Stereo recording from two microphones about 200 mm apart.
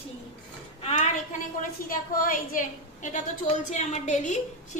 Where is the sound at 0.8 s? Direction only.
35° left (ahead or behind).